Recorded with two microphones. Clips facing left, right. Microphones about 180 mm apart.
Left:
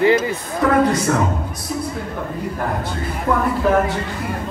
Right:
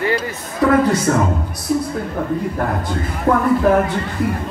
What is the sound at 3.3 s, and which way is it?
Speech, 50° right (ahead or behind).